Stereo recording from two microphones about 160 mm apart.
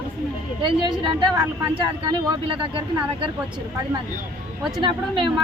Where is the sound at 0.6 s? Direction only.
30° right (ahead or behind).